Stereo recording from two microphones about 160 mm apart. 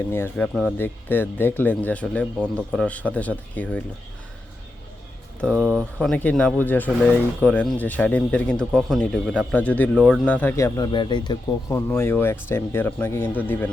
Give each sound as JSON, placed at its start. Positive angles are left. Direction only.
{"t": 0.1, "sound": "speech", "side_deg": 10}
{"t": 5.5, "sound": "speech", "side_deg": -15}
{"t": 6.0, "sound": "speech", "side_deg": 5}